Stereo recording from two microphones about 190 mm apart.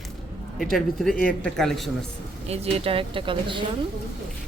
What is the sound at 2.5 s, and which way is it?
Speech, 30° right (ahead or behind).